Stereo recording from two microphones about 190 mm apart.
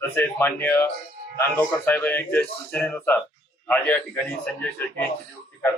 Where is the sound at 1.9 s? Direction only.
10° left (ahead or behind).